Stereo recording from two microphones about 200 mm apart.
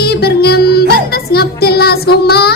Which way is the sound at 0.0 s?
50° left (ahead or behind).